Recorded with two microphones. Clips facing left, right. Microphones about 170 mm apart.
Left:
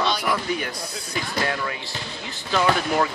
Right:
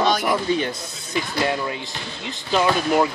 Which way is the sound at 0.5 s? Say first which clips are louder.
Right 4 dB; 25° right (ahead or behind).